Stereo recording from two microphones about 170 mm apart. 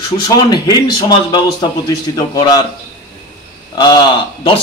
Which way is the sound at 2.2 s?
25° left (ahead or behind).